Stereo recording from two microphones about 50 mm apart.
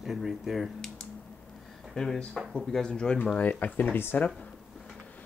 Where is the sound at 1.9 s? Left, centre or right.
Centre.